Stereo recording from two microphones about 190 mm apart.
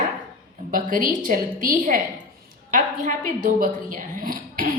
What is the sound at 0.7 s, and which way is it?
A woman's voice, 45° right (ahead or behind).